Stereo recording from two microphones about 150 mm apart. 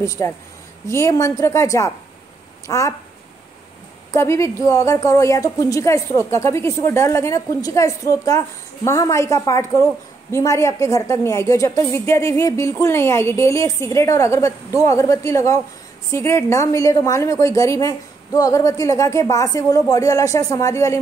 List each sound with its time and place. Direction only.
0.0 s a woman's voice: 20° left (ahead or behind)
4.1 s a woman's voice: 20° left (ahead or behind)